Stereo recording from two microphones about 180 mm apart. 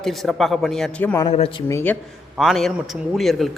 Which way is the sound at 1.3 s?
30° left (ahead or behind).